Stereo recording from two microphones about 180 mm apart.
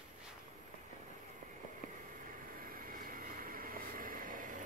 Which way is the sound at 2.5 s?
50° right (ahead or behind).